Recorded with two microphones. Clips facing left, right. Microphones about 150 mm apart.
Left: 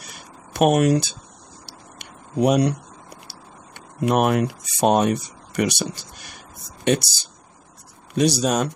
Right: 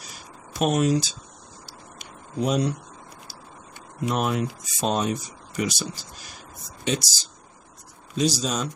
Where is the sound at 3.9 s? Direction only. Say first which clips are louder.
Left 6 dB; 60° left (ahead or behind).